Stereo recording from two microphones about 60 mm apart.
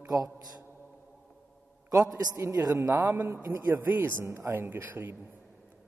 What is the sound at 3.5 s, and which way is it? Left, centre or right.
Speech, right.